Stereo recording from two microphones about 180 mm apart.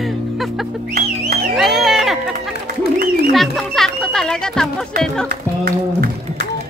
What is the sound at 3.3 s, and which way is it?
Music, centre (ahead or behind).